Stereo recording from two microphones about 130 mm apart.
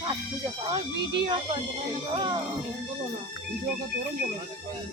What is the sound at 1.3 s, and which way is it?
Speech, 45° right (ahead or behind).